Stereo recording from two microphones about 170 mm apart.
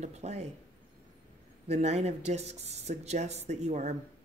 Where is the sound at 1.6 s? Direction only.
40° right (ahead or behind).